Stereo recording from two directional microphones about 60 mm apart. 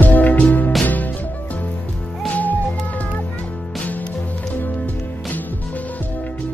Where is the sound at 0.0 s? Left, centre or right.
Left.